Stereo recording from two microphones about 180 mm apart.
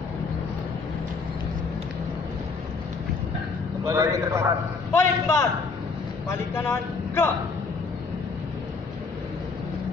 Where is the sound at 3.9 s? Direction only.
20° right (ahead or behind).